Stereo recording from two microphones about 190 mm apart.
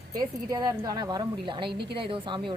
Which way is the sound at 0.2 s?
20° right (ahead or behind).